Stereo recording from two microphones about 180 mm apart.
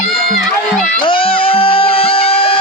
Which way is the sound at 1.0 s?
30° left (ahead or behind).